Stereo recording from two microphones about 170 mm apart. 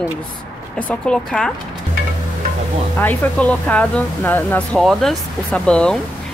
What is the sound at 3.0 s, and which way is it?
Speech, 10° left (ahead or behind).